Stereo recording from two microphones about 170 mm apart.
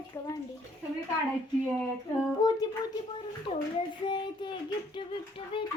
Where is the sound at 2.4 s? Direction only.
25° left (ahead or behind).